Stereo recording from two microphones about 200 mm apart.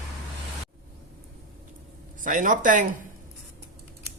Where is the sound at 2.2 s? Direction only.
40° right (ahead or behind).